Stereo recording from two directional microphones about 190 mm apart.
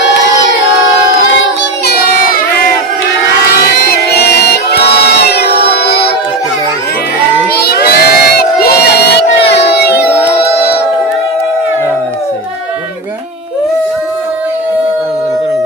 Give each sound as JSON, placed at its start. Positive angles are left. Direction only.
{"t": 1.2, "sound": "child singing", "side_deg": 65}
{"t": 3.5, "sound": "crowd", "side_deg": 55}
{"t": 7.5, "sound": "crowd", "side_deg": 55}